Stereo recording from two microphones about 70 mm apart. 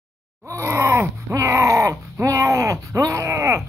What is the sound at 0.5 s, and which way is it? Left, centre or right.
Groan, right.